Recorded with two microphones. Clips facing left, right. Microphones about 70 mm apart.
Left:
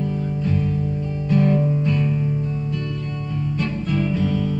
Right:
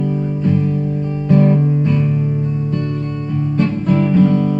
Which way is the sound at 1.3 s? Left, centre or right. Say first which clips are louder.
Right 5 dB; right.